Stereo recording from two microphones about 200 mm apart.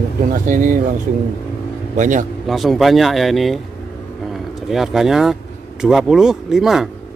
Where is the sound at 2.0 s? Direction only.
40° right (ahead or behind).